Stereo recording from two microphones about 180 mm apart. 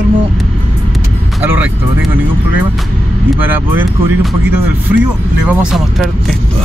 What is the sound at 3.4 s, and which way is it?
Speech, 10° right (ahead or behind).